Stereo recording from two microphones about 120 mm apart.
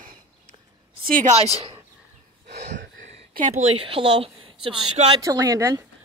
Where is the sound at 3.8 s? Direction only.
50° right (ahead or behind).